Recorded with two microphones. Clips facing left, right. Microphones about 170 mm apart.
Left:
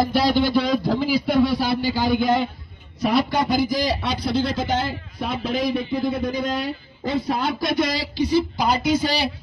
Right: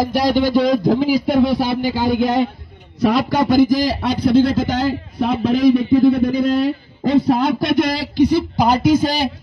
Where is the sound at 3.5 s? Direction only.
50° right (ahead or behind).